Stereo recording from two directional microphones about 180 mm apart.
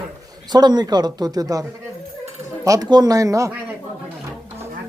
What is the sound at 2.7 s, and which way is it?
Speech, 20° right (ahead or behind).